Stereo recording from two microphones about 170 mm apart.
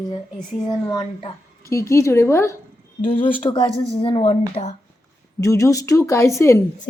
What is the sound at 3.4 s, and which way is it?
Speech, 30° left (ahead or behind).